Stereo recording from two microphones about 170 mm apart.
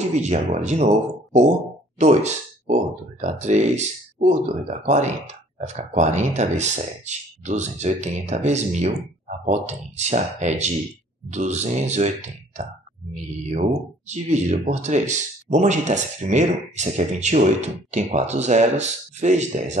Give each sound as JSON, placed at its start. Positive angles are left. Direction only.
{"t": 0.0, "sound": "speech", "side_deg": -40}